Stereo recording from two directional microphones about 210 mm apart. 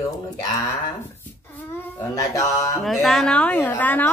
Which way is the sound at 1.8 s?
10° left (ahead or behind).